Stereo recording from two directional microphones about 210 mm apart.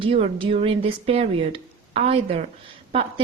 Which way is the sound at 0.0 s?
25° right (ahead or behind).